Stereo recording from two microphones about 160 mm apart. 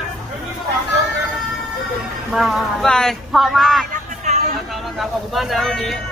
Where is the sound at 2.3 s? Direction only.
Centre (ahead or behind).